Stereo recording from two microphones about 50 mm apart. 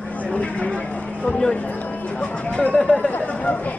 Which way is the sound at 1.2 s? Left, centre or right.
Centre.